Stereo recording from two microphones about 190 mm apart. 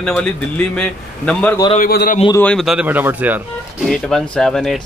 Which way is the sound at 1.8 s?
50° left (ahead or behind).